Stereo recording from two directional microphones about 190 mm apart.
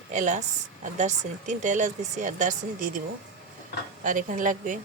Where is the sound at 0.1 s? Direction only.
40° right (ahead or behind).